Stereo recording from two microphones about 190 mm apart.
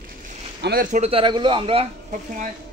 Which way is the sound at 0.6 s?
50° right (ahead or behind).